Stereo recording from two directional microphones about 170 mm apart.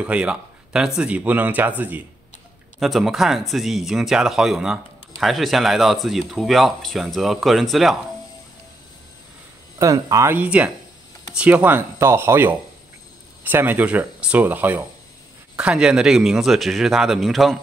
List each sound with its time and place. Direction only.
0.0 s speech: 5° right (ahead or behind)
9.8 s speech: 20° right (ahead or behind); by 17.6 s centre (ahead or behind)